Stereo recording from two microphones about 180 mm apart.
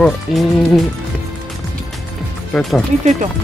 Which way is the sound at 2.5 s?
Centre (ahead or behind).